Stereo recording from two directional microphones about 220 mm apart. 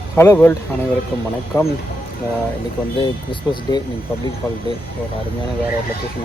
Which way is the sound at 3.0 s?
20° left (ahead or behind).